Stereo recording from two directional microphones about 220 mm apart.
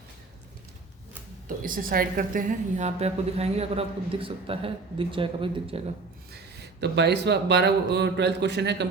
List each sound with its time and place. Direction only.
1.5 s a woman's voice: 40° right (ahead or behind); by 5.8 s 25° right (ahead or behind)
6.3 s speech: 50° right (ahead or behind)